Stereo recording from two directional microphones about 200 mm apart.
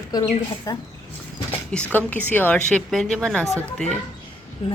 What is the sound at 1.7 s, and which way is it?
A woman's voice, 5° left (ahead or behind).